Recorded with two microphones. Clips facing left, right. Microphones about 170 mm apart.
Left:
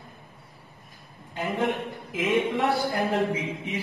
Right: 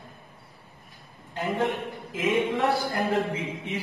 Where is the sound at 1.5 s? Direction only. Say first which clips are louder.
Left 1 dB; 20° left (ahead or behind).